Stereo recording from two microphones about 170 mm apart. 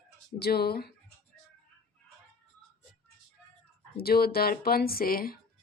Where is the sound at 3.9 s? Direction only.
65° left (ahead or behind).